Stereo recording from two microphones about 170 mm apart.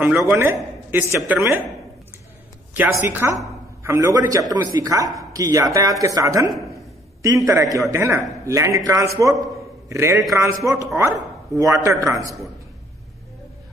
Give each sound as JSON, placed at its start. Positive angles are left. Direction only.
{"t": 0.0, "sound": "a man's voice", "side_deg": -10}
{"t": 2.7, "sound": "a man's voice", "side_deg": -10}